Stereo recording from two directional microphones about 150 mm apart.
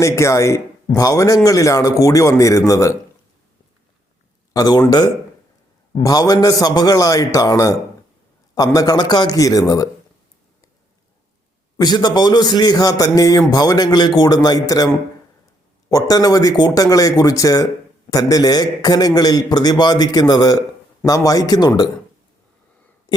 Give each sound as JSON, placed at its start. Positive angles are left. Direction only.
{"t": 0.0, "sound": "a man's voice", "side_deg": 20}
{"t": 4.5, "sound": "a man's voice", "side_deg": 25}
{"t": 11.8, "sound": "a man's voice", "side_deg": 25}
{"t": 15.9, "sound": "a man's voice", "side_deg": 25}
{"t": 23.1, "sound": "a sound", "side_deg": 30}